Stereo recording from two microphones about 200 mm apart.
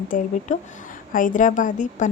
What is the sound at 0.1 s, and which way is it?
A woman's voice, 40° left (ahead or behind).